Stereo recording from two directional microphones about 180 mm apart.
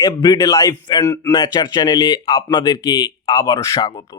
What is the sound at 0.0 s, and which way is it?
A man's voice, 20° left (ahead or behind).